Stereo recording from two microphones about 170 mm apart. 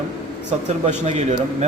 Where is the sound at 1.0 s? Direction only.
40° right (ahead or behind).